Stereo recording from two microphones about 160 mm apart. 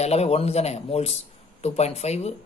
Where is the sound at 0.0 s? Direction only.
40° left (ahead or behind).